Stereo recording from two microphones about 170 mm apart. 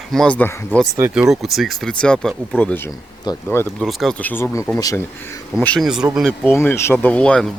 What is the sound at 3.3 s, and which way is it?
Speech, 25° left (ahead or behind).